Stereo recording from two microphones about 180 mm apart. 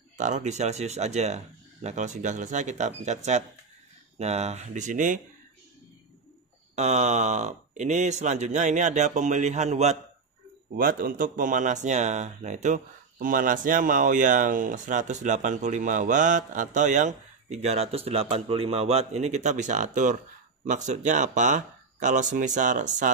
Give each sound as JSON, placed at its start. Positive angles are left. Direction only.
{"t": 0.2, "sound": "speech", "side_deg": -40}
{"t": 6.7, "sound": "speech", "side_deg": -40}
{"t": 10.8, "sound": "speech", "side_deg": -50}